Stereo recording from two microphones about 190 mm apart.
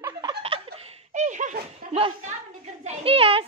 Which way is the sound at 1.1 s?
40° right (ahead or behind).